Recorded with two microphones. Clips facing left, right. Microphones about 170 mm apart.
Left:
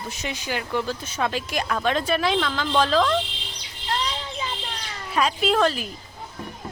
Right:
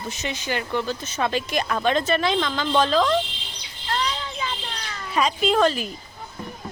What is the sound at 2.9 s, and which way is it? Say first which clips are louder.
Speech: even; 5° right (ahead or behind).